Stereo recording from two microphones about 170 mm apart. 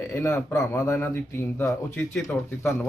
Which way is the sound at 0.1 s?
15° left (ahead or behind).